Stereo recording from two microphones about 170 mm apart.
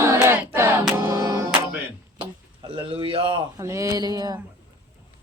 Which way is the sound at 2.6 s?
30° right (ahead or behind).